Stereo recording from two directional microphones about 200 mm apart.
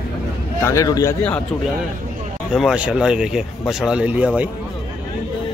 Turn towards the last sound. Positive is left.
turn(degrees=-5)  # may be behind; listen again after turning